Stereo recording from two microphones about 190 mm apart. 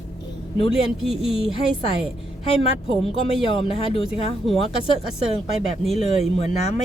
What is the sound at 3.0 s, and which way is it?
A woman's voice, 30° left (ahead or behind).